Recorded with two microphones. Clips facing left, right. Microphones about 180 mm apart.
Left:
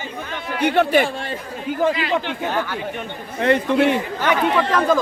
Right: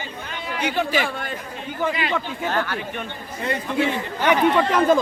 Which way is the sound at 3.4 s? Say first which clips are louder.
Left 7 dB; 65° left (ahead or behind).